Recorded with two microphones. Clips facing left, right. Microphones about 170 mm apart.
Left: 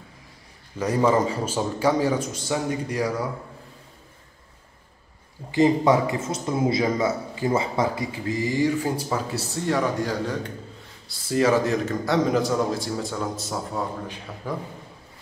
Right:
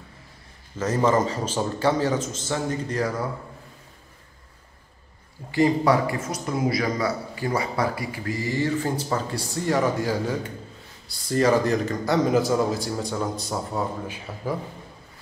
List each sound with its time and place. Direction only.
0.7 s a man's voice: 15° left (ahead or behind)
5.5 s a man's voice: 20° left (ahead or behind); by 14.5 s 5° right (ahead or behind)